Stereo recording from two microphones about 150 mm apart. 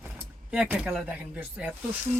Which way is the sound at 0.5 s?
10° right (ahead or behind).